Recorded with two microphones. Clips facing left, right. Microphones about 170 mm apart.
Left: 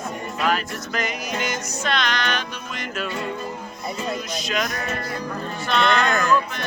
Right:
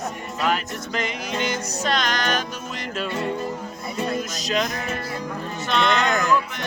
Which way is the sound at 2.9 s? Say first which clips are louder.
Right 2 dB; 30° right (ahead or behind).